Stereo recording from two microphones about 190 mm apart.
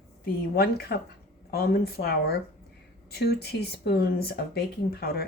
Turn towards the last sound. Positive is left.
turn(degrees=55)  # may be behind; listen again after turning